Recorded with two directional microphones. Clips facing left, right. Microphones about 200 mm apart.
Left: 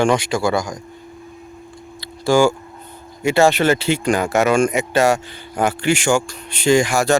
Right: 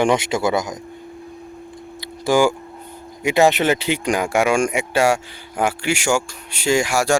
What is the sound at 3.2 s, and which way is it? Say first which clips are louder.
Speech: left 1 dB; 15° right (ahead or behind).